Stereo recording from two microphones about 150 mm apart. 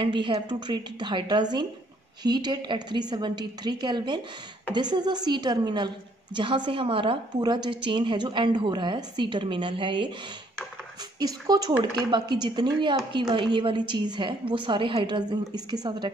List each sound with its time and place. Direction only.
0.0 s a woman's voice: 35° right (ahead or behind)
11.1 s a woman's voice: 25° right (ahead or behind)